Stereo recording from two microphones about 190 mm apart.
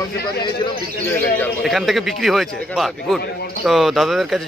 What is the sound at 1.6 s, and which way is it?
A man's voice, centre (ahead or behind).